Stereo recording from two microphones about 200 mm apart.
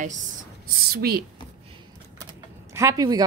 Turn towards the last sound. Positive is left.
turn(degrees=-20)  # may be behind; listen again after turning